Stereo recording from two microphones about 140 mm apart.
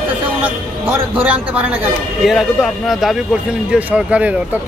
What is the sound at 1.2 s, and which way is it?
Speech, 10° right (ahead or behind).